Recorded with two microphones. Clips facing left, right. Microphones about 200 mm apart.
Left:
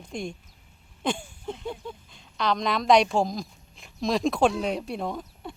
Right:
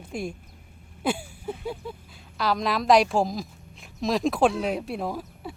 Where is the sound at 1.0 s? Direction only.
5° right (ahead or behind).